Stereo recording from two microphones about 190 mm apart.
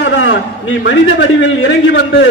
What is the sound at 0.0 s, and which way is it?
A man's voice, 70° left (ahead or behind).